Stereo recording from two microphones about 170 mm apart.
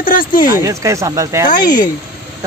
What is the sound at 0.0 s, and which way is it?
Speech, 55° left (ahead or behind).